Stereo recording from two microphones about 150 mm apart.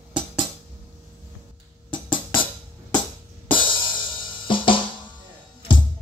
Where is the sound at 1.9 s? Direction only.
35° left (ahead or behind).